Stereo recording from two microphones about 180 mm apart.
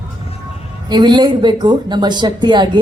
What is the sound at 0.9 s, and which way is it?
Speech, 25° right (ahead or behind).